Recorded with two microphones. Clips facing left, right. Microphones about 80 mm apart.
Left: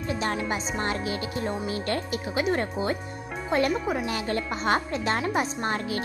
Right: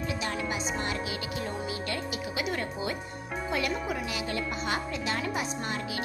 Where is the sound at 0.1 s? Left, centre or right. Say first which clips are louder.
Left 7 dB; left.